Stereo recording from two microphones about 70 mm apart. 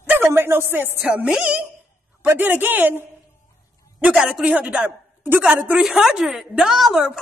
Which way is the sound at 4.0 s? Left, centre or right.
Centre.